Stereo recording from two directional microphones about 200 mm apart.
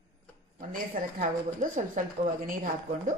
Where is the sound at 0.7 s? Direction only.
40° right (ahead or behind).